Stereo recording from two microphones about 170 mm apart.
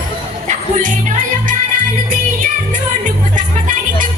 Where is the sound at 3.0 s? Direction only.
50° right (ahead or behind).